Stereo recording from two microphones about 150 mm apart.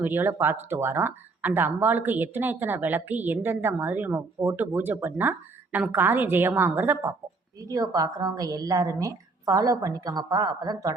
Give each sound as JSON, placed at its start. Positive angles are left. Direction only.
{"t": 0.0, "sound": "a woman's voice", "side_deg": -15}